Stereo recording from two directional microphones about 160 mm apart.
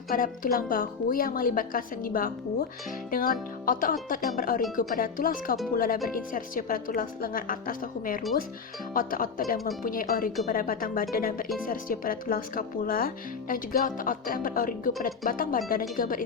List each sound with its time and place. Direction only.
0.1 s speech: 60° left (ahead or behind)